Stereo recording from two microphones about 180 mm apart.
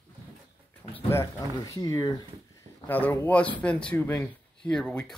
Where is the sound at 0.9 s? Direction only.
15° left (ahead or behind).